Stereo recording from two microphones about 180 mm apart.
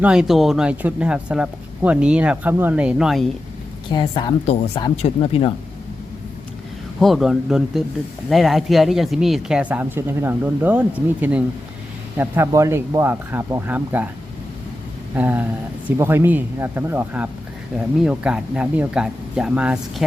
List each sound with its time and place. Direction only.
0.0 s speech: 5° right (ahead or behind)
3.9 s speech: 30° left (ahead or behind)
7.0 s speech: centre (ahead or behind)
15.1 s speech: 10° right (ahead or behind)